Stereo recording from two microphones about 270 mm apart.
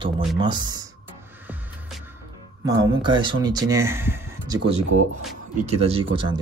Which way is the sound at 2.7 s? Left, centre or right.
Centre.